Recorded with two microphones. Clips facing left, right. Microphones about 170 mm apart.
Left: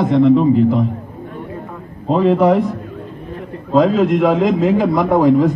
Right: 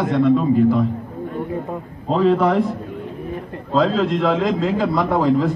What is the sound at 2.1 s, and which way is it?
Speech, 15° left (ahead or behind).